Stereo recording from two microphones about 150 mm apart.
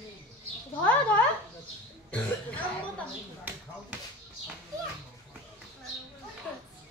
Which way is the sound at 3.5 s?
10° right (ahead or behind).